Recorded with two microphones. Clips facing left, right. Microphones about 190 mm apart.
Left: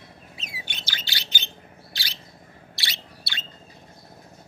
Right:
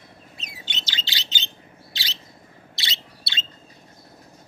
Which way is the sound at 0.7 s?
20° right (ahead or behind).